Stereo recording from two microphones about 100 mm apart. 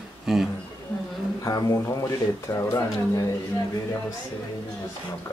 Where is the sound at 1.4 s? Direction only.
35° left (ahead or behind).